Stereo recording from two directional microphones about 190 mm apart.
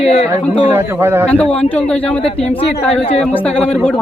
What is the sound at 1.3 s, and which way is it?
Speech, 5° left (ahead or behind).